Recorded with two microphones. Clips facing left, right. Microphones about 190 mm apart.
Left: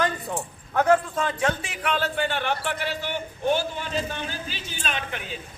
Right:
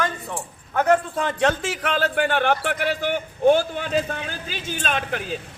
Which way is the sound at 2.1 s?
55° right (ahead or behind).